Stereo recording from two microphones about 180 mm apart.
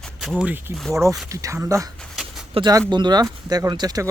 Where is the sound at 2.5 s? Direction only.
25° right (ahead or behind).